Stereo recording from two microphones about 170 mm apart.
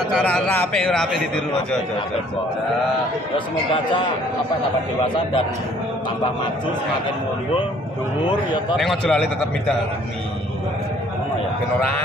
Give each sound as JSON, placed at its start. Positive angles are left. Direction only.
{"t": 0.2, "sound": "a man's voice", "side_deg": 10}
{"t": 8.7, "sound": "a man's voice", "side_deg": 5}